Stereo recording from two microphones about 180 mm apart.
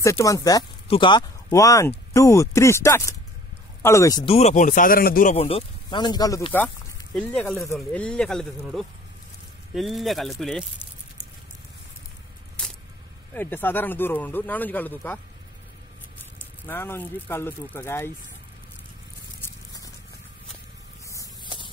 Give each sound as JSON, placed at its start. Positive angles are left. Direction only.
{"t": 0.0, "sound": "speech", "side_deg": 20}
{"t": 4.3, "sound": "speech", "side_deg": 40}
{"t": 5.3, "sound": "speech", "side_deg": 35}
{"t": 7.2, "sound": "speech", "side_deg": 5}
{"t": 13.3, "sound": "speech", "side_deg": 10}
{"t": 16.6, "sound": "speech", "side_deg": 10}
{"t": 21.1, "sound": "a sound", "side_deg": 20}